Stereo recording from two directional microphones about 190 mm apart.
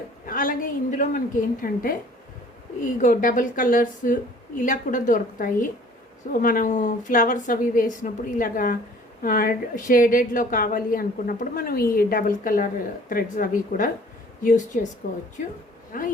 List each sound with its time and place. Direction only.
0.3 s a woman's voice: 45° left (ahead or behind)